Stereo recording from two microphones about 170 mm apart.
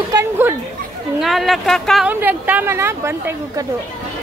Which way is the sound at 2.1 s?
10° right (ahead or behind).